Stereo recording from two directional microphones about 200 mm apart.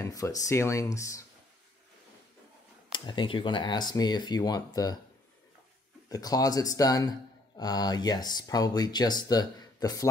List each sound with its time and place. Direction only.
0.0 s speech: 15° left (ahead or behind)
2.9 s speech: 25° left (ahead or behind)
6.0 s speech: 20° left (ahead or behind)